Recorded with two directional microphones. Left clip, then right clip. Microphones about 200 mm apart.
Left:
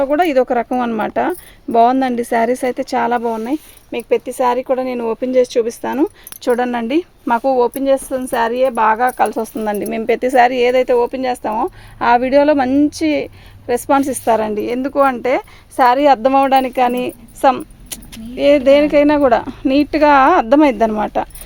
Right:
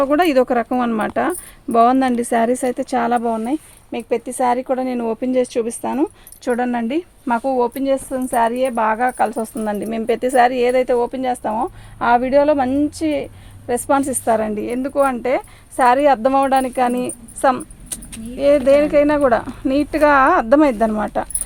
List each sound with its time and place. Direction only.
0.1 s speech: 10° left (ahead or behind)
0.6 s a woman's voice: 25° left (ahead or behind)